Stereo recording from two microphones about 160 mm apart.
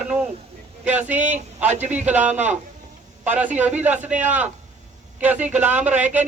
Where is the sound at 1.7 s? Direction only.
45° right (ahead or behind).